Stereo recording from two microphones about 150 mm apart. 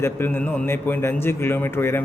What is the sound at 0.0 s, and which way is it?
A man's voice, 15° left (ahead or behind).